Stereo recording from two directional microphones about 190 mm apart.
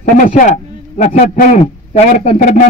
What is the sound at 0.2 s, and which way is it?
A man's voice, 45° left (ahead or behind).